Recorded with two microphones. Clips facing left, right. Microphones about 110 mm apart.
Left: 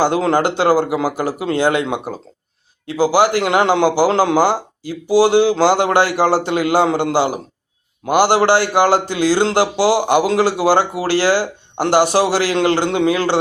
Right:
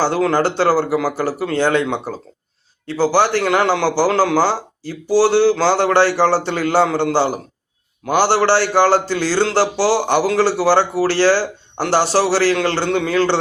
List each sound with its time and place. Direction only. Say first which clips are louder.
0.0 s a man's voice: left 1 dB; 20° left (ahead or behind)